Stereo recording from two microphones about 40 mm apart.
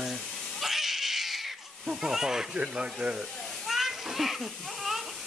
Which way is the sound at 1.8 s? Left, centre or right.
Centre.